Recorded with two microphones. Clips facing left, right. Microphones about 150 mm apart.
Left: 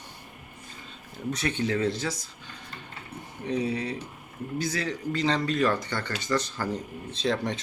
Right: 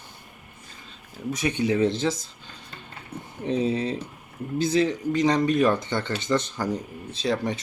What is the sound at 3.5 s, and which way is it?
Speech, 25° right (ahead or behind).